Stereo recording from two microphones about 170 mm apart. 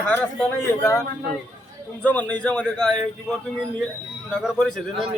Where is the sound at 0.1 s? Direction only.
5° left (ahead or behind).